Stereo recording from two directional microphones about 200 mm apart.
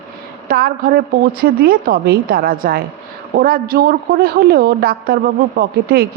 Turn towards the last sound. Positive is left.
turn(degrees=-50)  # may be behind; listen again after turning